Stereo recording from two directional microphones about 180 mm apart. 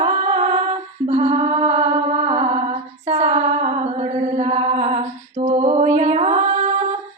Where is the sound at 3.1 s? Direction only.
35° right (ahead or behind).